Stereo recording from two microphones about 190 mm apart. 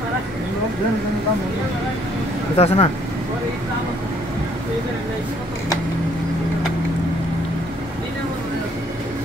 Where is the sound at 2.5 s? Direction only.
30° left (ahead or behind).